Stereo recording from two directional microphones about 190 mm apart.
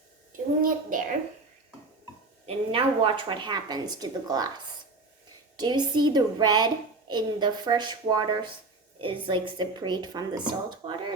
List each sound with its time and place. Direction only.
0.6 s a child's voice: 45° right (ahead or behind)
2.5 s a woman's voice: 30° right (ahead or behind)
5.5 s a woman's voice: 25° right (ahead or behind)